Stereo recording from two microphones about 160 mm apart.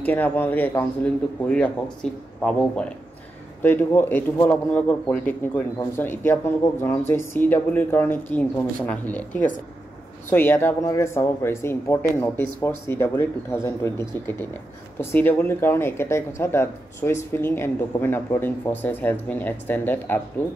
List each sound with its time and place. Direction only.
0.0 s speech: 10° left (ahead or behind)
2.0 s speech: 5° left (ahead or behind)